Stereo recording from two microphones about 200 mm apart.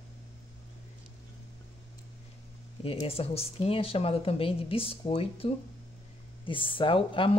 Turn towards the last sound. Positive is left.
turn(degrees=25)  # may be behind; listen again after turning